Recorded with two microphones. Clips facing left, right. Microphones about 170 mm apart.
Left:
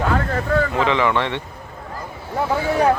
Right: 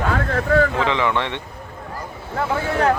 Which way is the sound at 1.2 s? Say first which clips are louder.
Left 2 dB; 15° right (ahead or behind).